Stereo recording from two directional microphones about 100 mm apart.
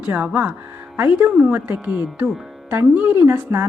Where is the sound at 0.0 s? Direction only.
15° right (ahead or behind).